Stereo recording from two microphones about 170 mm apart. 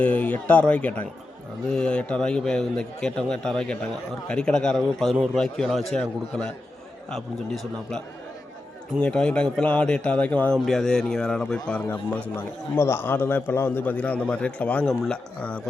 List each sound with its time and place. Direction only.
0.0 s a man's voice: 10° left (ahead or behind)